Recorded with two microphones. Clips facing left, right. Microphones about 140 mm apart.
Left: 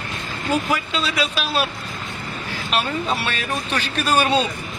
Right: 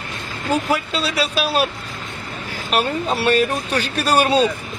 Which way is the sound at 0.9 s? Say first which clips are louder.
Right 2 dB; 40° right (ahead or behind).